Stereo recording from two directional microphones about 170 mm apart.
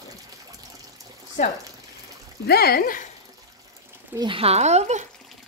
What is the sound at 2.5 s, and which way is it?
Speech, 65° left (ahead or behind).